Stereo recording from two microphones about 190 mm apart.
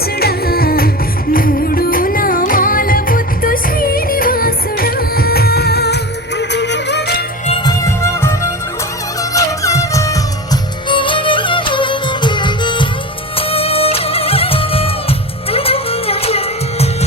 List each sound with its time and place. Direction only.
0.0 s music: 55° left (ahead or behind)
7.6 s music: 15° left (ahead or behind)